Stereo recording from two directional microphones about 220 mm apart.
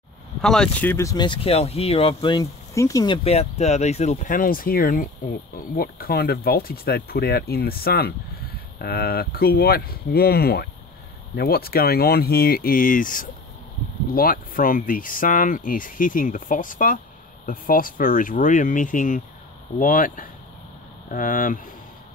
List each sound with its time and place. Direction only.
0.4 s speech: 5° left (ahead or behind)
3.3 s speech: 30° left (ahead or behind)